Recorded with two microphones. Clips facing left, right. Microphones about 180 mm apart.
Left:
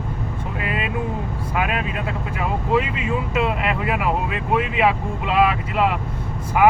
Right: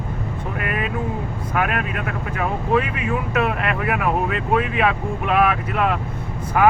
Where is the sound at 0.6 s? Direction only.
15° left (ahead or behind).